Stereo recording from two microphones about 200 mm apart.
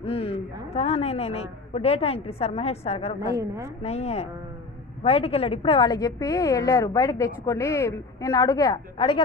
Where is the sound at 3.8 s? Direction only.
30° left (ahead or behind).